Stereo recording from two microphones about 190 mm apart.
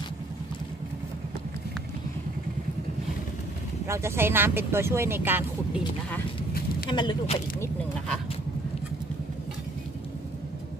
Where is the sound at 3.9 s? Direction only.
15° right (ahead or behind).